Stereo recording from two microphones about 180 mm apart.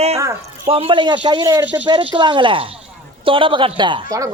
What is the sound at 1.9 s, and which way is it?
Speech, 25° right (ahead or behind).